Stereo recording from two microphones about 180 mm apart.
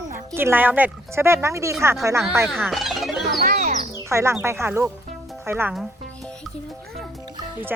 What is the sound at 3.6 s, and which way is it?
Bird, 40° right (ahead or behind).